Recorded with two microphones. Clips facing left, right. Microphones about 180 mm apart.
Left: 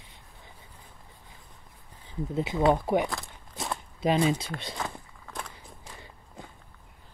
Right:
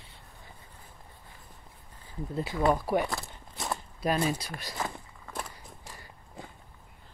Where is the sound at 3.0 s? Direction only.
Centre (ahead or behind).